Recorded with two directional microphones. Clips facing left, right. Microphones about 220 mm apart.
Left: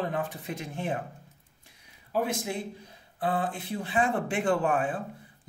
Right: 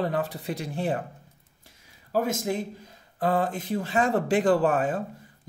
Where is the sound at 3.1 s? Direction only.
40° right (ahead or behind).